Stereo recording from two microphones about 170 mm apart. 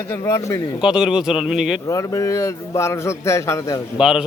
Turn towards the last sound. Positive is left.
turn(degrees=-5)  # may be behind; listen again after turning